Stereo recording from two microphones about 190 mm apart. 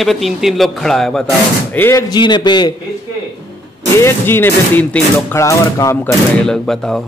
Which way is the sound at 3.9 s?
15° left (ahead or behind).